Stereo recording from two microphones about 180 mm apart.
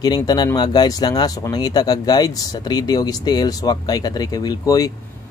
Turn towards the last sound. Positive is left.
turn(degrees=20)  # may be behind; listen again after turning